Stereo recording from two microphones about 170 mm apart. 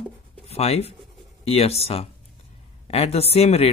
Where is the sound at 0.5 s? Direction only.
35° left (ahead or behind).